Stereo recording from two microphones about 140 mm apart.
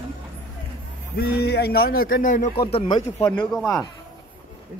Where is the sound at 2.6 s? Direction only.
40° left (ahead or behind).